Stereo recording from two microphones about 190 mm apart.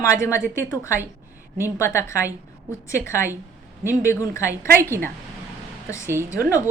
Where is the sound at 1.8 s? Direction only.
15° left (ahead or behind).